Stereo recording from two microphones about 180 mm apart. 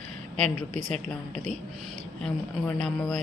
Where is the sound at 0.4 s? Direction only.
40° right (ahead or behind).